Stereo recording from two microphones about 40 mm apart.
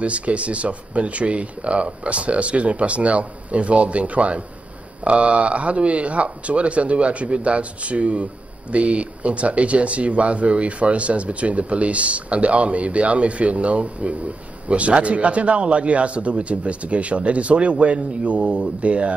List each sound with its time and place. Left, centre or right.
0.0 s speech: right